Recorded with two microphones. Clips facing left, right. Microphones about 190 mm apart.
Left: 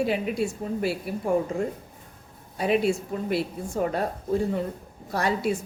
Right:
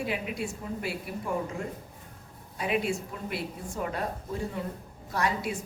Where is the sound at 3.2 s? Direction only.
35° left (ahead or behind).